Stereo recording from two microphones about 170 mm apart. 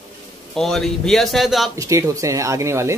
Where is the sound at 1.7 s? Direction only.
20° right (ahead or behind).